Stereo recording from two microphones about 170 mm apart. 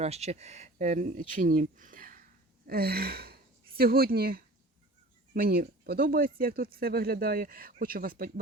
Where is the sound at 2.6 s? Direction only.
65° right (ahead or behind).